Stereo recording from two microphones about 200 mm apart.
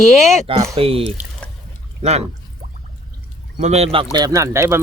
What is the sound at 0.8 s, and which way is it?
Speech, 30° right (ahead or behind).